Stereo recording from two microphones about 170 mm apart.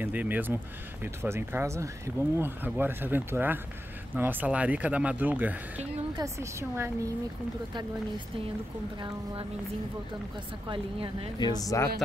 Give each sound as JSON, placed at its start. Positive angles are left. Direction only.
{"t": 0.0, "sound": "speech", "side_deg": -10}
{"t": 9.0, "sound": "a woman's voice", "side_deg": -30}
{"t": 11.3, "sound": "speech", "side_deg": 25}